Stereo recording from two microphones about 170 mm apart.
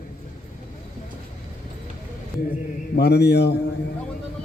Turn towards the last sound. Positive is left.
turn(degrees=75)  # may be behind; listen again after turning